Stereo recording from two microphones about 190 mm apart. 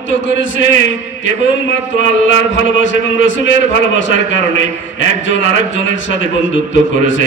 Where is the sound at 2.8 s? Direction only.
80° left.